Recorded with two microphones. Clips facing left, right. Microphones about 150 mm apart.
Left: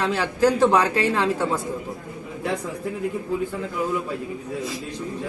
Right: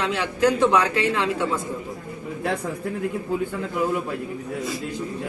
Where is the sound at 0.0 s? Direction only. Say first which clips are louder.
Left 1 dB; 35° left (ahead or behind).